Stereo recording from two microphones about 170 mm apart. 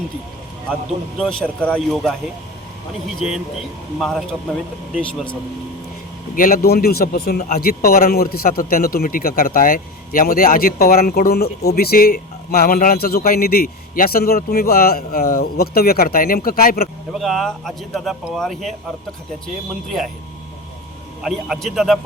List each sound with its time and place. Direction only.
1.2 s speech: 5° left (ahead or behind)
3.2 s speech: centre (ahead or behind)
6.3 s a man's voice: 55° left (ahead or behind)
17.2 s speech: centre (ahead or behind)
21.2 s speech: centre (ahead or behind)